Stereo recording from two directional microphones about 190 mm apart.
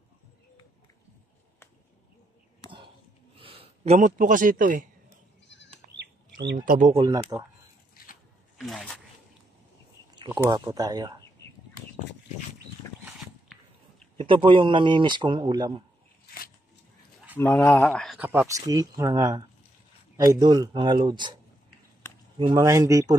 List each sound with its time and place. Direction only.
3.3 s a man's voice: 30° right (ahead or behind); by 4.8 s 45° right (ahead or behind)
5.9 s bird: 65° right (ahead or behind)
6.6 s speech: 45° right (ahead or behind)
7.0 s speech: 20° right (ahead or behind)
8.5 s speech: centre (ahead or behind)
10.1 s a sound: 25° right (ahead or behind)
10.5 s speech: 20° right (ahead or behind)
14.1 s speech: 25° right (ahead or behind)
17.4 s speech: 10° left (ahead or behind); by 21.4 s 25° right (ahead or behind)
22.5 s speech: 20° right (ahead or behind)